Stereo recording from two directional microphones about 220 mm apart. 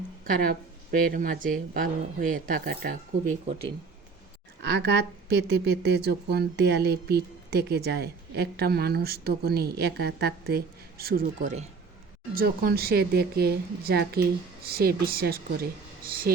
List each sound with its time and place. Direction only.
0.3 s a woman's voice: 40° right (ahead or behind)
4.6 s a woman's voice: 50° right (ahead or behind)